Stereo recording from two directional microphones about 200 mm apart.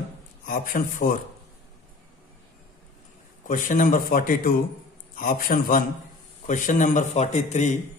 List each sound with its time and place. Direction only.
0.5 s a man's voice: 40° left (ahead or behind)
3.4 s a man's voice: 40° left (ahead or behind)